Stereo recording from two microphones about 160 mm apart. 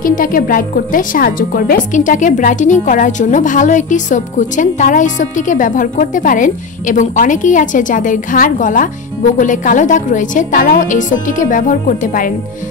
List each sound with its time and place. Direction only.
0.0 s a woman's voice: 60° left (ahead or behind)